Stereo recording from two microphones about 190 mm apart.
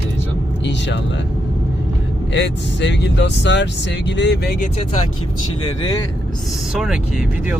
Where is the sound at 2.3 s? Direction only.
65° left (ahead or behind).